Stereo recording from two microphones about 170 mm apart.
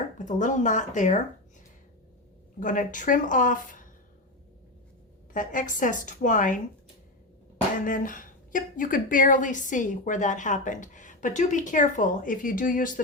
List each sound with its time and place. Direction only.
0.3 s a woman's voice: 45° left (ahead or behind)
2.6 s a woman's voice: 50° left (ahead or behind)
5.3 s a woman's voice: 50° left (ahead or behind)
7.9 s a woman's voice: 55° left (ahead or behind)